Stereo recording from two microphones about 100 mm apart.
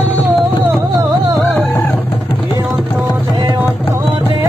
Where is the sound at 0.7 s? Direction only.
Centre (ahead or behind).